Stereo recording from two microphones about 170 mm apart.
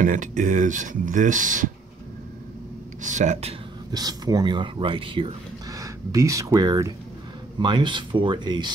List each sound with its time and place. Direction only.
0.0 s speech: 50° right (ahead or behind)
3.0 s speech: 45° right (ahead or behind)
3.9 s speech: 20° right (ahead or behind)